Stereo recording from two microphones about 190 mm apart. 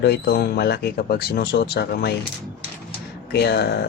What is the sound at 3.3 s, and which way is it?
Speech, 60° left (ahead or behind).